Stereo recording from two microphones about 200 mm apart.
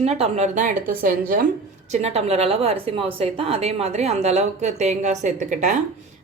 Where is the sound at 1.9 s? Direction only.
30° right (ahead or behind).